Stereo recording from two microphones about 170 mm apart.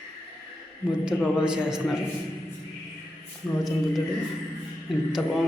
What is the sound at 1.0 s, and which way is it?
Speech, 5° right (ahead or behind).